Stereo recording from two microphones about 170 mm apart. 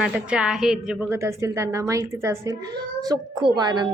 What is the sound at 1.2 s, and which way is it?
A woman's voice, 15° right (ahead or behind).